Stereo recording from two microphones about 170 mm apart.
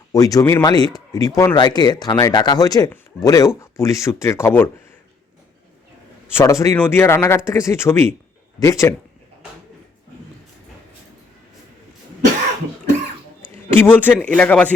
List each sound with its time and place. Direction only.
0.1 s speech: 20° left (ahead or behind)
6.3 s speech: 15° left (ahead or behind)
13.7 s speech: 10° left (ahead or behind)